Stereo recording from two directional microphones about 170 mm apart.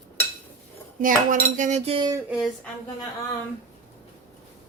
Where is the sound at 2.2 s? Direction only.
Centre (ahead or behind).